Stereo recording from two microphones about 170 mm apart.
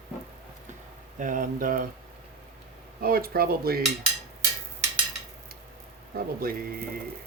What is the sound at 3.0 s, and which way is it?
Speech, 60° right (ahead or behind).